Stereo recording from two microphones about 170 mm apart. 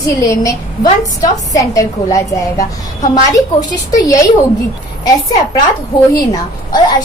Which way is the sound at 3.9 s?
20° left (ahead or behind).